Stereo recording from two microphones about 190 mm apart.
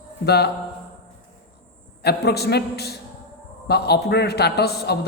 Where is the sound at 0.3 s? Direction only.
60° left (ahead or behind).